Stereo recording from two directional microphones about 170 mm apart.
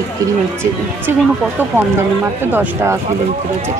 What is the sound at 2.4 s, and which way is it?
Speech, 15° right (ahead or behind).